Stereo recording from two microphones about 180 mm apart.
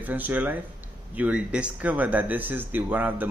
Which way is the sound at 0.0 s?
10° right (ahead or behind).